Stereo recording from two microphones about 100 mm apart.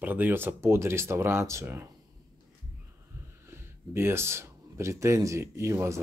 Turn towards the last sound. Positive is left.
turn(degrees=-30)  # may be behind; listen again after turning